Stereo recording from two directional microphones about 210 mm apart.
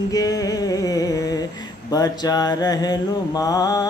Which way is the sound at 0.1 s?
15° left (ahead or behind).